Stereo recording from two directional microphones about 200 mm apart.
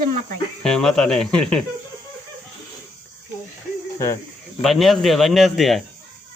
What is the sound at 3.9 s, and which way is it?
Speech, 15° left (ahead or behind).